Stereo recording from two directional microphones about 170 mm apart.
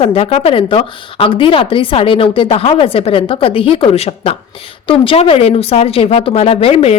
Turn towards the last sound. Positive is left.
turn(degrees=35)  # may be behind; listen again after turning